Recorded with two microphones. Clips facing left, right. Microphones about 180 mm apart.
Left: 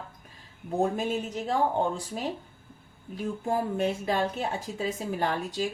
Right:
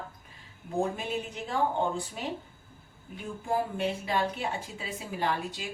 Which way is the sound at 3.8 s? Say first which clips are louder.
Left 3 dB; 45° left (ahead or behind).